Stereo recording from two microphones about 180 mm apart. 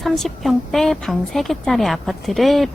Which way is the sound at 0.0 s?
Centre (ahead or behind).